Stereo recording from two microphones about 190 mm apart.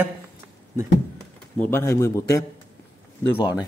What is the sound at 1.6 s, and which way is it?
Speech, 10° left (ahead or behind).